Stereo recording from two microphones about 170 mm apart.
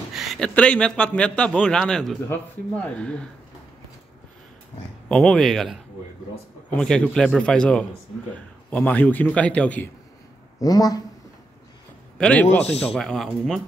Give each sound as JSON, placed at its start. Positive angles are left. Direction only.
{"t": 0.1, "sound": "a man's voice", "side_deg": 0}
{"t": 5.0, "sound": "a man's voice", "side_deg": 5}
{"t": 10.6, "sound": "speech", "side_deg": 20}
{"t": 12.2, "sound": "a man's voice", "side_deg": 5}